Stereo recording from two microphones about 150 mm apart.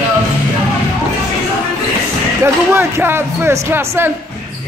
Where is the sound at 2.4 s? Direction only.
15° right (ahead or behind).